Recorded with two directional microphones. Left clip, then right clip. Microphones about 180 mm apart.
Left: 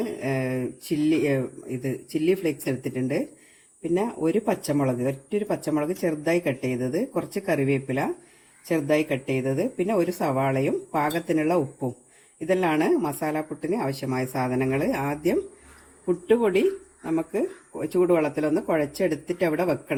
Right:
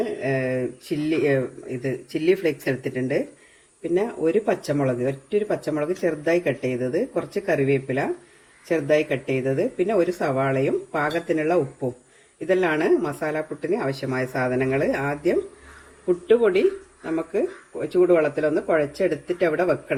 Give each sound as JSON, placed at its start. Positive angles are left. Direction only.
{"t": 0.0, "sound": "speech", "side_deg": 60}